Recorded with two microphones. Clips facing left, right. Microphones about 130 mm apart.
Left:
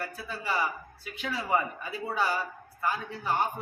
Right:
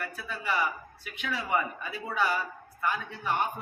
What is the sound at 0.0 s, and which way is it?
A man's voice, 35° left (ahead or behind).